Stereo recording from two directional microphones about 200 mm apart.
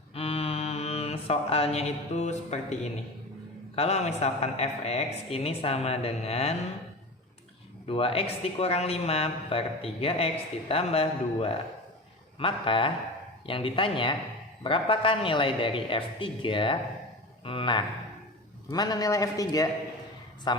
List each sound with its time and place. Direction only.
0.1 s mantra: 30° left (ahead or behind)
3.8 s speech: 35° left (ahead or behind)
7.9 s a man's voice: 30° left (ahead or behind)